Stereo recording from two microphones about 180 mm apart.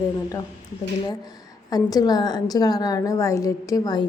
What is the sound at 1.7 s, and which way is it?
A woman's voice, 20° left (ahead or behind).